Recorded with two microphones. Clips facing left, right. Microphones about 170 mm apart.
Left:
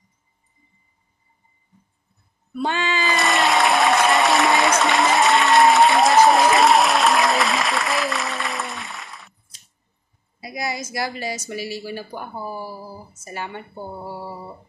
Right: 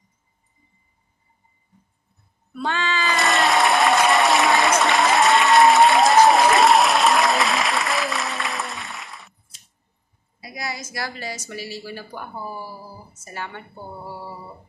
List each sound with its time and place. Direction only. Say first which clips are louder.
2.5 s a sound: left 2 dB; 15° left (ahead or behind)
3.2 s applause: even; centre (ahead or behind)
10.4 s a woman's voice: left 4 dB; 20° left (ahead or behind)